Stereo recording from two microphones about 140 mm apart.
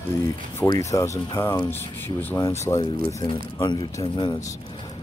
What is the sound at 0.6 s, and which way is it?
Speech, 25° left (ahead or behind).